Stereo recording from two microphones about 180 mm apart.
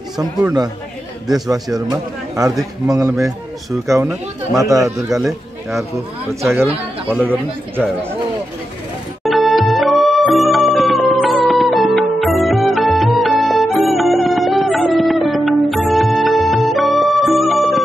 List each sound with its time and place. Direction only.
0.2 s a man's voice: 20° right (ahead or behind)
6.4 s speech: 15° right (ahead or behind)
9.2 s music: centre (ahead or behind)